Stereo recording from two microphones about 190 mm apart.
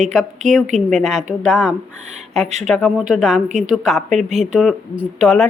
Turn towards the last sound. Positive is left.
turn(degrees=0)  # may be behind; listen again after turning